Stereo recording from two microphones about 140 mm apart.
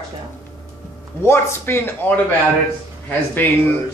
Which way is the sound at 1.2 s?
15° left (ahead or behind).